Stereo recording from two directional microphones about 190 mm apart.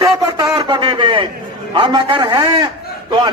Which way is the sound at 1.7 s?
25° right (ahead or behind).